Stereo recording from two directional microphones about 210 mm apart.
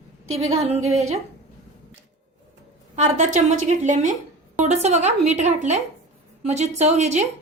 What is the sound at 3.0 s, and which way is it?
A woman's voice, 35° right (ahead or behind).